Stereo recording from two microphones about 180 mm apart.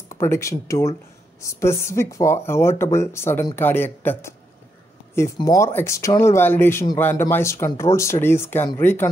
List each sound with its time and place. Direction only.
0.1 s speech: 15° left (ahead or behind)